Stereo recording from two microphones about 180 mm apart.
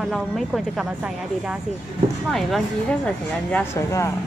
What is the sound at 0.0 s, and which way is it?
Speech, centre (ahead or behind).